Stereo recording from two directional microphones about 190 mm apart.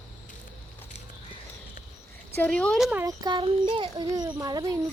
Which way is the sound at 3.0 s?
20° right (ahead or behind).